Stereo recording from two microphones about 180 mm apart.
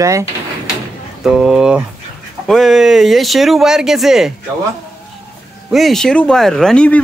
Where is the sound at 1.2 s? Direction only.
Centre (ahead or behind).